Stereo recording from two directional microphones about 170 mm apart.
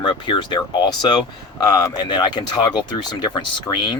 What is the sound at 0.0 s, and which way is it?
Speech, 25° left (ahead or behind).